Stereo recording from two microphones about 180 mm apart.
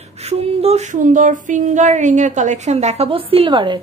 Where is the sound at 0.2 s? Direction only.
35° right (ahead or behind).